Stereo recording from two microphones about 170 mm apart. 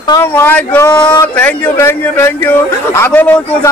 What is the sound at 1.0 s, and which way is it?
A man's voice, 25° left (ahead or behind).